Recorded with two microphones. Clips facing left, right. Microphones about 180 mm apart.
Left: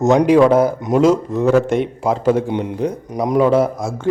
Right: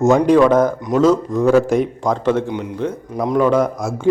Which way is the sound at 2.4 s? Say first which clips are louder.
Left 3 dB; 30° left (ahead or behind).